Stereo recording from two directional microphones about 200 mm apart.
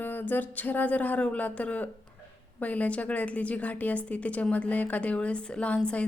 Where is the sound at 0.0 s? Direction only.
10° left (ahead or behind).